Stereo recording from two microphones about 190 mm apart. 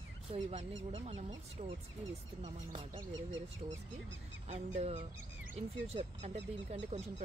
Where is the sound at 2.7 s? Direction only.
25° right (ahead or behind).